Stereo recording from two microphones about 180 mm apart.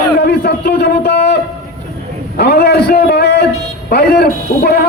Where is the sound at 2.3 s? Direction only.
65° left (ahead or behind).